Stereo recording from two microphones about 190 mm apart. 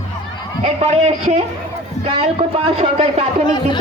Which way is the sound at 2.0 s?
30° right (ahead or behind).